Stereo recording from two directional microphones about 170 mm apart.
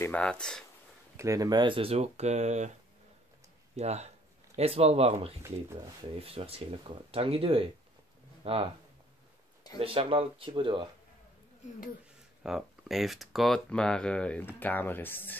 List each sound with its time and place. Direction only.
0.0 s speech: 5° left (ahead or behind)
1.1 s speech: 20° right (ahead or behind); by 2.7 s 40° right (ahead or behind)
3.7 s speech: 40° right (ahead or behind)
9.8 s speech: 35° right (ahead or behind)
12.4 s speech: centre (ahead or behind)